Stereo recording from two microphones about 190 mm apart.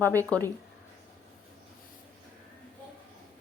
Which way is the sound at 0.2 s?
10° left (ahead or behind).